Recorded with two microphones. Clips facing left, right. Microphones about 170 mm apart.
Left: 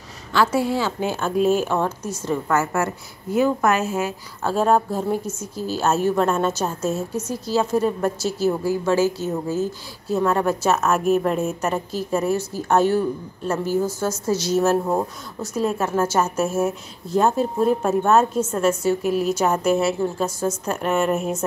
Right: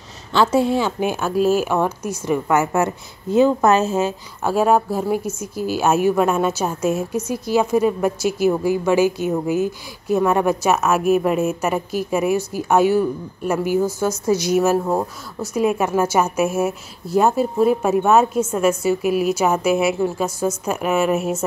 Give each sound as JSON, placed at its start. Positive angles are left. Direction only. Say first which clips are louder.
{"t": 0.3, "sound": "speech", "louder": "right 3 dB", "side_deg": -25}
{"t": 1.3, "sound": "speech", "louder": "right 1 dB", "side_deg": -5}
{"t": 4.5, "sound": "speech", "louder": "right 2 dB", "side_deg": -10}